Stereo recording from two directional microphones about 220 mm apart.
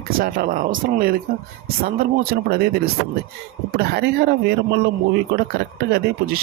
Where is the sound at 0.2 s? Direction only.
40° right (ahead or behind).